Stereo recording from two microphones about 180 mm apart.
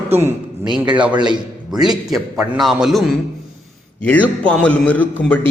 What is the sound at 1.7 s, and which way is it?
A man's voice, centre (ahead or behind).